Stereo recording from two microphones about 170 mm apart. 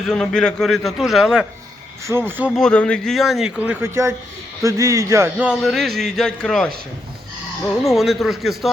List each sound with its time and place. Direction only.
0.1 s speech: 5° left (ahead or behind)
2.0 s speech: 15° right (ahead or behind)
2.6 s speech: 5° left (ahead or behind); by 5.5 s 15° right (ahead or behind)
5.5 s speech: centre (ahead or behind)
7.9 s speech: centre (ahead or behind)